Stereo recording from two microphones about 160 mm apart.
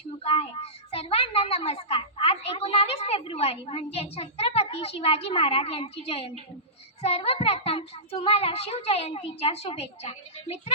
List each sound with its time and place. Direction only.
0.2 s a woman's voice: 35° left (ahead or behind)